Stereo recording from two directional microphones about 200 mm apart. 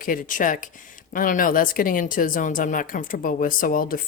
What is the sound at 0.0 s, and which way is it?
A woman's voice, 45° left (ahead or behind).